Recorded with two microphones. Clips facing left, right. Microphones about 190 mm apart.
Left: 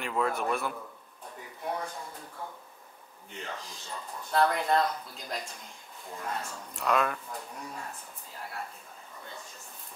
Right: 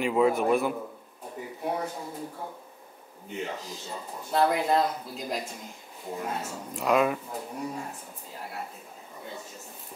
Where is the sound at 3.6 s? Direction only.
5° right (ahead or behind).